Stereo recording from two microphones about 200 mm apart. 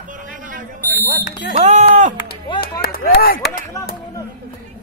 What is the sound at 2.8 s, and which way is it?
Speech, 50° left (ahead or behind).